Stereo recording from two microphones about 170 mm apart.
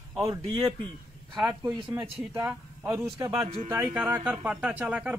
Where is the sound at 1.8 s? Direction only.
30° right (ahead or behind).